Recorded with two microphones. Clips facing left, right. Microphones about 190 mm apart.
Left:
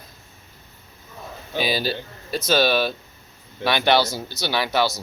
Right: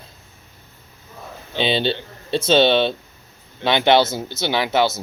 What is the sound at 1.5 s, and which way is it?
Speech, 25° right (ahead or behind).